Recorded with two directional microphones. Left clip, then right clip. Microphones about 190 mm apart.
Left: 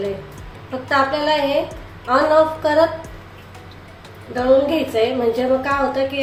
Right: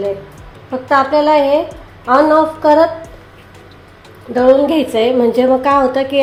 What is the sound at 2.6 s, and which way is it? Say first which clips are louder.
Speech: right 6 dB; 45° right (ahead or behind).